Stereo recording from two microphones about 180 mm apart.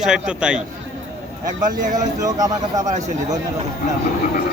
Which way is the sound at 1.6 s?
45° right (ahead or behind).